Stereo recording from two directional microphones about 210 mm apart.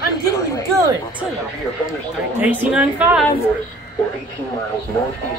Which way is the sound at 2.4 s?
10° right (ahead or behind).